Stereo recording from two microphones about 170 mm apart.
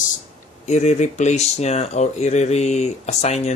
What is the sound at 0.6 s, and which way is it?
Speech, 40° left (ahead or behind).